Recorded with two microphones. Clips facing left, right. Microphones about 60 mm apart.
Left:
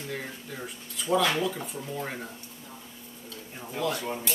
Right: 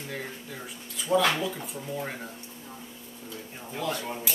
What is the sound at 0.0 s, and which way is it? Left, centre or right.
Speech, centre.